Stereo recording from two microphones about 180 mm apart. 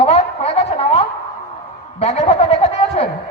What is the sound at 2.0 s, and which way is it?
Speech, 35° left (ahead or behind).